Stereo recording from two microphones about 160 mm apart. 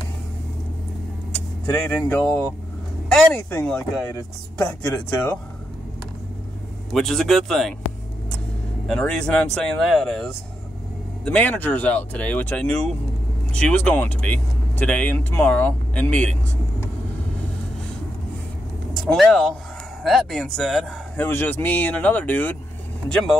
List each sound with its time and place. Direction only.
1.3 s vehicle: 10° left (ahead or behind)
2.0 s speech: 5° left (ahead or behind)
4.1 s speech: 15° left (ahead or behind)
6.9 s speech: centre (ahead or behind)
8.8 s speech: 5° left (ahead or behind)
18.9 s speech: 5° left (ahead or behind)
21.2 s speech: 10° left (ahead or behind)